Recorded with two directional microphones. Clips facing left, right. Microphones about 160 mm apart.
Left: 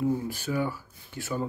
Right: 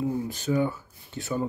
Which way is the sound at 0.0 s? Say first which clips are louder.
Even; 20° right (ahead or behind).